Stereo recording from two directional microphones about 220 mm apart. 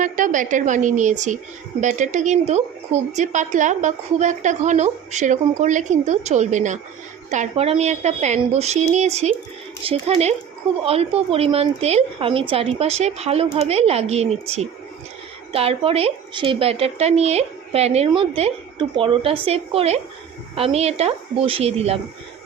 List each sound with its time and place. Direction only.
0.0 s a woman's voice: 35° right (ahead or behind)